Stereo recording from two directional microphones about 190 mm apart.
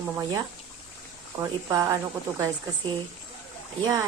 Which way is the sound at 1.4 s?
20° right (ahead or behind).